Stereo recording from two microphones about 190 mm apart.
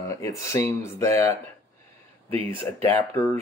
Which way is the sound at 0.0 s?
15° left (ahead or behind).